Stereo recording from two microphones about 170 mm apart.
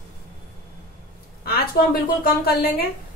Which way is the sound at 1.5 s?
65° left (ahead or behind).